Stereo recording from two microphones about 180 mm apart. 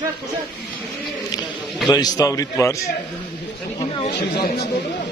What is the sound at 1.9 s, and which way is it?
Speech, 20° left (ahead or behind).